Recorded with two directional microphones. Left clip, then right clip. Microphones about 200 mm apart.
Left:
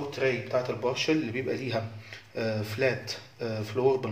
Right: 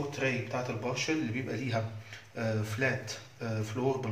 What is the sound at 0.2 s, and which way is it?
Speech, 35° left (ahead or behind).